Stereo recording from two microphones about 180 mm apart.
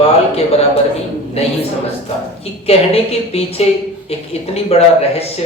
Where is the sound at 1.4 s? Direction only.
35° left (ahead or behind).